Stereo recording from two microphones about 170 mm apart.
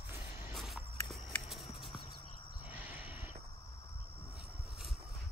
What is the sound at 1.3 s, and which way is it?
Walk, centre (ahead or behind).